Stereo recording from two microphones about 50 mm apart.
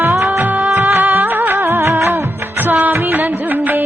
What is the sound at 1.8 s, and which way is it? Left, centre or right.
Music of bollywood, right.